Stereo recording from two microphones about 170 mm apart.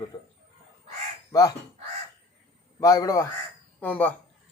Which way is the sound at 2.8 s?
20° left (ahead or behind).